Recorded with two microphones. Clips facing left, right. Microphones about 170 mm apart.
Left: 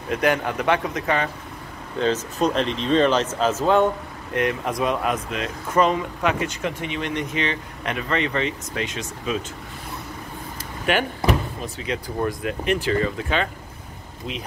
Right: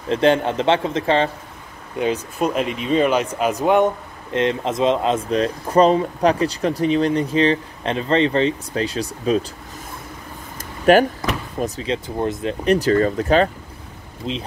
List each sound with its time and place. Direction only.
0.1 s speech: 25° right (ahead or behind)
2.0 s speech: 15° right (ahead or behind)
5.3 s speech: 35° right (ahead or behind)
10.9 s speech: 40° right (ahead or behind); by 12.5 s 25° right (ahead or behind)
12.6 s speech: 40° right (ahead or behind)